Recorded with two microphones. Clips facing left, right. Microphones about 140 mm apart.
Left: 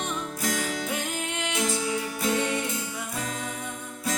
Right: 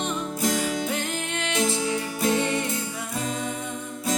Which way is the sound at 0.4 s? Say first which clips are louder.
Right 5 dB; 25° right (ahead or behind).